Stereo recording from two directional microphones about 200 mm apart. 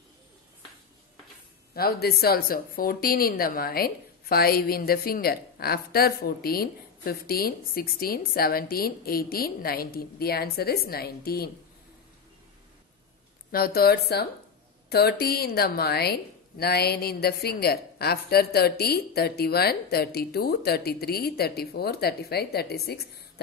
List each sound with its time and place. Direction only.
1.8 s speech: 50° left (ahead or behind)
13.5 s speech: 50° left (ahead or behind)